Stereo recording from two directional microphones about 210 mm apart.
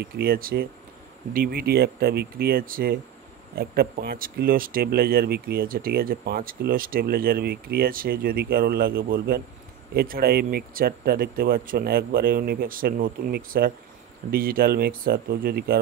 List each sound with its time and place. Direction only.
0.0 s speech: 45° right (ahead or behind)